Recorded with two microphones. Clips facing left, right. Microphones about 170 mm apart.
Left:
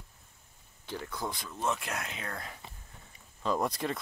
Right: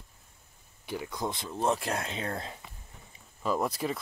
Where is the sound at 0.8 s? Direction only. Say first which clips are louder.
Right 3 dB; 10° right (ahead or behind).